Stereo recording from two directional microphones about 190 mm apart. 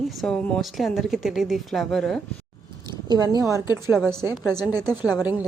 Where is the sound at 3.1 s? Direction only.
20° right (ahead or behind).